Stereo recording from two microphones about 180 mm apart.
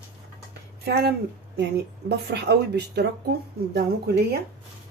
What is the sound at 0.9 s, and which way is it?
Speech, 60° right (ahead or behind).